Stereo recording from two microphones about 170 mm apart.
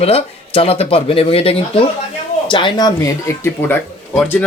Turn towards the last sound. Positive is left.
turn(degrees=5)  # may be behind; listen again after turning